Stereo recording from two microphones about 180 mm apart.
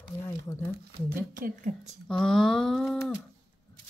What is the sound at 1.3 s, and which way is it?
Speech, 50° right (ahead or behind).